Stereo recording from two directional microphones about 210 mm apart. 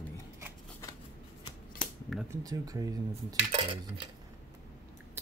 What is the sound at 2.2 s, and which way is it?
Speech, 15° right (ahead or behind).